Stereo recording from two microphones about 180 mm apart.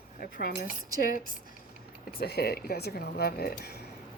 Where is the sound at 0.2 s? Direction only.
55° left (ahead or behind).